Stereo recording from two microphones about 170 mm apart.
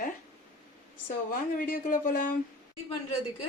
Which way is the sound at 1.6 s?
55° left (ahead or behind).